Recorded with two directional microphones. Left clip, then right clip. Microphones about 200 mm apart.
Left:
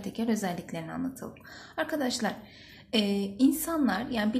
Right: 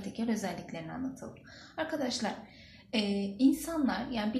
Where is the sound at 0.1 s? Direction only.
40° left (ahead or behind).